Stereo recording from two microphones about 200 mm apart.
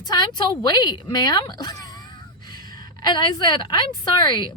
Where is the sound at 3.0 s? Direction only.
20° left (ahead or behind).